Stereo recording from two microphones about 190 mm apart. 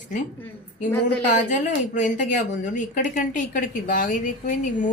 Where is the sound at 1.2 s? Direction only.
40° left (ahead or behind).